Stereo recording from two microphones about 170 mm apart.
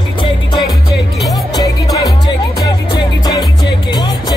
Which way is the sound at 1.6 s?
20° left (ahead or behind).